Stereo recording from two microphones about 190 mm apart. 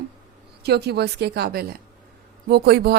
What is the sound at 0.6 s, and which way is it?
A woman's voice, 60° right (ahead or behind).